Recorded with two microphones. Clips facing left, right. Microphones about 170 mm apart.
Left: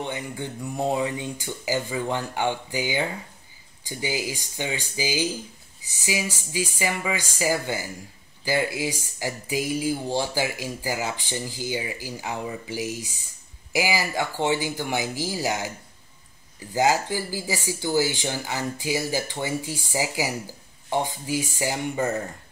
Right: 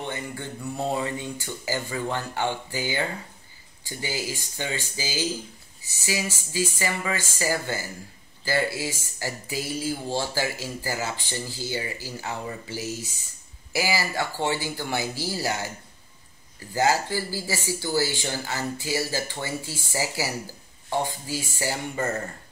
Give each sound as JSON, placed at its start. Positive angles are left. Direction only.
{"t": 0.0, "sound": "speech", "side_deg": 15}